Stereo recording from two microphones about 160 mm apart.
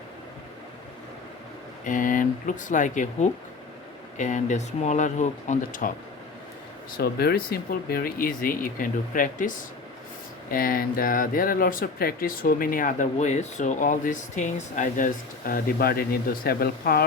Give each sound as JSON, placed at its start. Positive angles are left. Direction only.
{"t": 1.8, "sound": "speech", "side_deg": 55}
{"t": 6.9, "sound": "speech", "side_deg": 80}